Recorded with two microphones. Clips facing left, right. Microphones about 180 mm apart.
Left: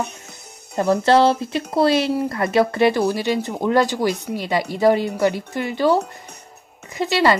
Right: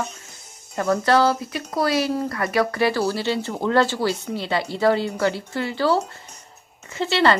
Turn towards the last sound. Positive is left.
turn(degrees=15)  # may be behind; listen again after turning